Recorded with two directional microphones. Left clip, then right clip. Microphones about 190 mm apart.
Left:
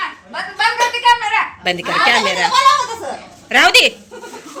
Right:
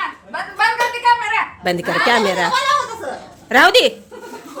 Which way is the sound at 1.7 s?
30° right (ahead or behind).